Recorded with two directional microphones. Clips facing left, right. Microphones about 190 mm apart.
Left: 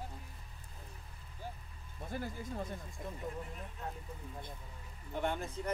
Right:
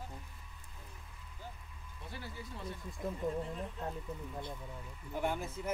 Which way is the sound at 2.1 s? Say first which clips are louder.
Left 6 dB; 45° left (ahead or behind).